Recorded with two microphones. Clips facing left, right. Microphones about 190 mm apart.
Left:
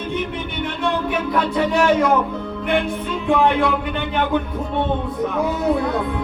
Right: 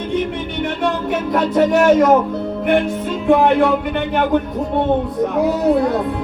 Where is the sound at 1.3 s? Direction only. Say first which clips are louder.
Right 6 dB; 40° right (ahead or behind).